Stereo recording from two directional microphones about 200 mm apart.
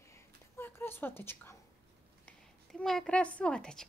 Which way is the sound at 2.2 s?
Centre (ahead or behind).